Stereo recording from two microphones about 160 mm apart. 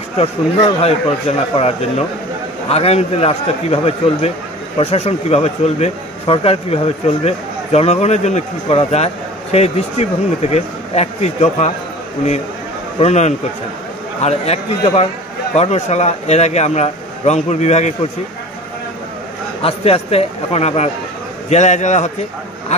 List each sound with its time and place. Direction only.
0.2 s speech: 40° left (ahead or behind)
13.0 s a man's voice: 45° left (ahead or behind)
19.6 s a man's voice: 40° left (ahead or behind)
22.7 s a sound: 45° left (ahead or behind)